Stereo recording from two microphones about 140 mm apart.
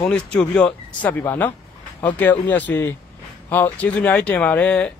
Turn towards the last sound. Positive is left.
turn(degrees=10)  # may be behind; listen again after turning